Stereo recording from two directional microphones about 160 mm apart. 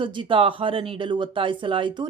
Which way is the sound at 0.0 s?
30° right (ahead or behind).